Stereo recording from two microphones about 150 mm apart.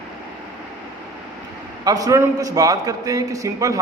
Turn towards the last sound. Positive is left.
turn(degrees=-20)  # may be behind; listen again after turning